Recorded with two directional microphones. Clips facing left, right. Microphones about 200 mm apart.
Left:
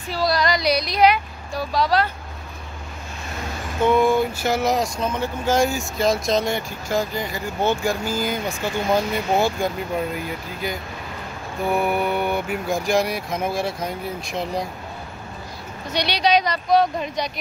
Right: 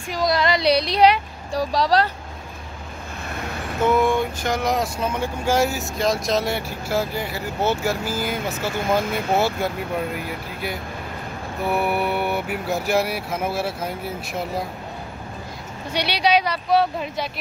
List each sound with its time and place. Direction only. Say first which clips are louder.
0.1 s speech: right 1 dB; 20° right (ahead or behind); by 2.0 s 35° right (ahead or behind)
3.8 s speech: left 2 dB; centre (ahead or behind)
11.7 s speech: left 1 dB; 5° right (ahead or behind)
15.9 s speech: even; 10° right (ahead or behind)